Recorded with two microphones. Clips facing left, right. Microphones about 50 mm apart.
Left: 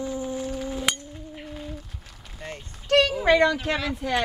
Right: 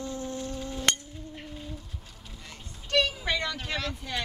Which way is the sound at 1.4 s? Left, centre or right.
Left.